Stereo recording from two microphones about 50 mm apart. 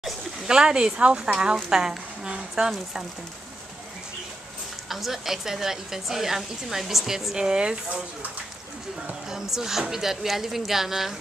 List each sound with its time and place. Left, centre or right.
0.5 s a woman's voice: centre
4.8 s a woman's voice: centre
7.3 s a woman's voice: centre
9.3 s a woman's voice: centre